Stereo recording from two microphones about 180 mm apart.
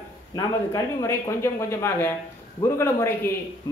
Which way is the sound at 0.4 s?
20° left (ahead or behind).